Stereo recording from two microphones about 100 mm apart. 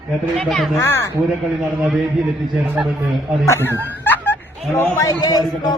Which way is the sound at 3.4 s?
25° left (ahead or behind).